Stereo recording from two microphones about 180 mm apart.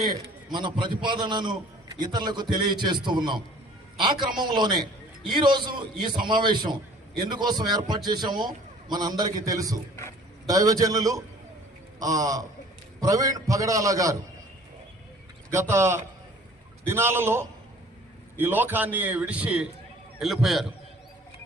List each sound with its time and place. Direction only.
0.0 s a man's voice: 25° right (ahead or behind)
15.5 s a man's voice: 15° right (ahead or behind)